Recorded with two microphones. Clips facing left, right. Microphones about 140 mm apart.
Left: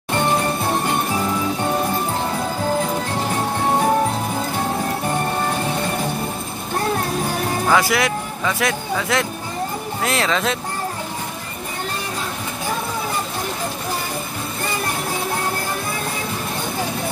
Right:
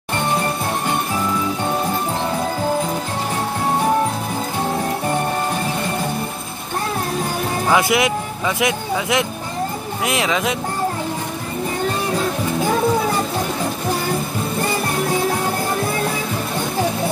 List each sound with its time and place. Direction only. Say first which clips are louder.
7.6 s speech: right 2 dB; 20° right (ahead or behind)